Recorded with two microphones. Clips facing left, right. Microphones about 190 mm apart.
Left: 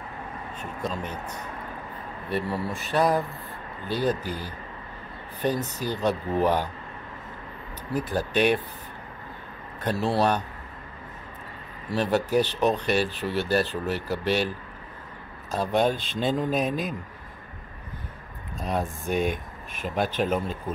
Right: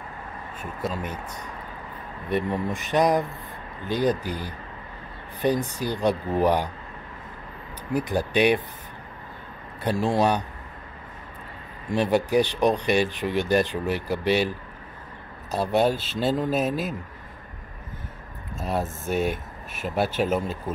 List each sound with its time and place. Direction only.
0.6 s speech: 10° right (ahead or behind)
2.2 s speech: 15° right (ahead or behind)
7.9 s speech: 15° right (ahead or behind)
9.8 s speech: 10° right (ahead or behind)
11.9 s speech: 10° right (ahead or behind)
15.5 s speech: 10° right (ahead or behind)
18.6 s speech: 5° right (ahead or behind)